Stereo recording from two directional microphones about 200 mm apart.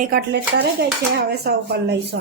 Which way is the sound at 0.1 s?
50° right (ahead or behind).